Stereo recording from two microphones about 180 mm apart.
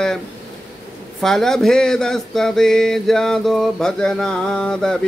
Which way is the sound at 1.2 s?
Centre (ahead or behind).